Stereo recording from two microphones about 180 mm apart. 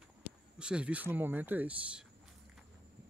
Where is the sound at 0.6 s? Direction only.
5° right (ahead or behind).